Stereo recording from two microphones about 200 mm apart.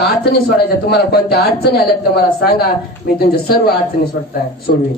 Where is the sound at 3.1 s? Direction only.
50° left (ahead or behind).